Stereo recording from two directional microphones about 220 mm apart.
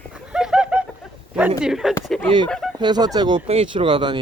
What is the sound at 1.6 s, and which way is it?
Speech, centre (ahead or behind).